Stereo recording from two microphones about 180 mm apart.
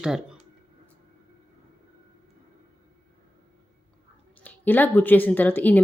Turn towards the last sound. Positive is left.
turn(degrees=10)  # may be behind; listen again after turning